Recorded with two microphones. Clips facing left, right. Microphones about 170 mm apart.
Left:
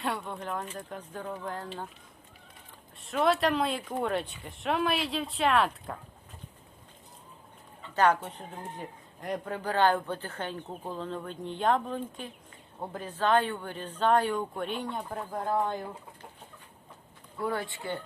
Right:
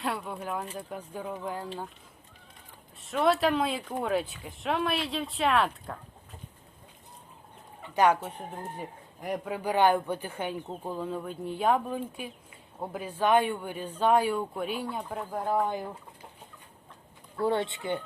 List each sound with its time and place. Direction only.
0.0 s a man's voice: centre (ahead or behind)
3.0 s speech: centre (ahead or behind)
7.9 s a man's voice: 10° right (ahead or behind)
17.4 s speech: 25° right (ahead or behind)